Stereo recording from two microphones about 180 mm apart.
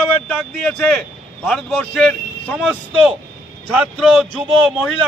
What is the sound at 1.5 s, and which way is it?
A man's voice, centre (ahead or behind).